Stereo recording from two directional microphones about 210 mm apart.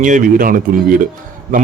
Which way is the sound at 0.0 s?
40° right (ahead or behind).